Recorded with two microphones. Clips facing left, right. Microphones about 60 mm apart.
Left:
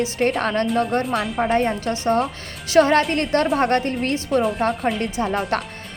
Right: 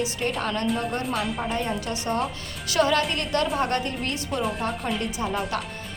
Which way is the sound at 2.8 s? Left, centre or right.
Left.